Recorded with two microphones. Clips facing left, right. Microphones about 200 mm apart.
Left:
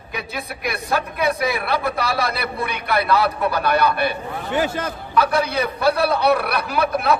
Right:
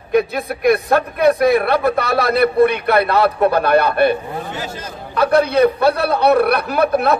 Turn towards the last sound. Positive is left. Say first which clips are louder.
# right 4 dB
turn(degrees=-55)  # may be behind; listen again after turning